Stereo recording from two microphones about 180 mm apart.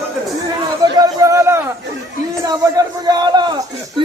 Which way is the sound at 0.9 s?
20° right (ahead or behind).